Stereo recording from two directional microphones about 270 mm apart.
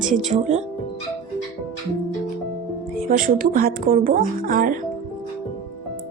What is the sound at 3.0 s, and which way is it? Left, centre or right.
Speech, right.